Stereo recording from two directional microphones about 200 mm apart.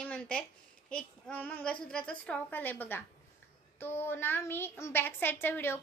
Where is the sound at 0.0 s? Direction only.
5° left (ahead or behind).